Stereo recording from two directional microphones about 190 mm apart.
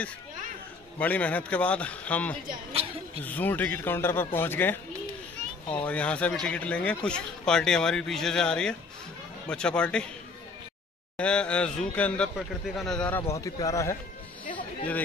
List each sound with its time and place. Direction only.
0.9 s a man's voice: 5° left (ahead or behind)
11.1 s speech: 5° left (ahead or behind)
13.3 s a man's voice: 15° left (ahead or behind)